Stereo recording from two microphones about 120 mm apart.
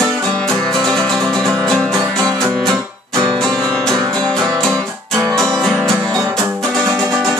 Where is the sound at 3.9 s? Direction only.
35° right (ahead or behind).